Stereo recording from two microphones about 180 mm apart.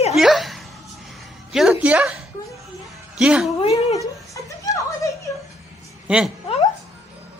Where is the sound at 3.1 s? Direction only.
5° right (ahead or behind).